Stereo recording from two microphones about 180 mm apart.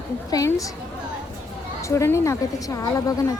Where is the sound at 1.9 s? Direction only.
15° left (ahead or behind).